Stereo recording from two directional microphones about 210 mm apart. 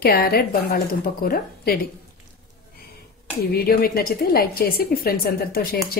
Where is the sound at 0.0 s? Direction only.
45° left (ahead or behind).